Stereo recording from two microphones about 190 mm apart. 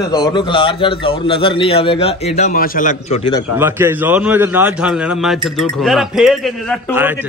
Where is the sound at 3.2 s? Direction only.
25° left (ahead or behind).